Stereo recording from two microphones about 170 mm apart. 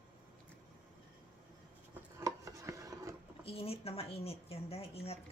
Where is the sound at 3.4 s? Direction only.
35° left (ahead or behind).